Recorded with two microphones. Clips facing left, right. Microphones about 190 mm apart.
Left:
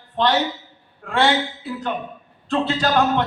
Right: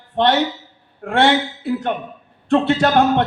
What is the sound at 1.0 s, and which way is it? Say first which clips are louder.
Speech: right 4 dB; 55° right (ahead or behind).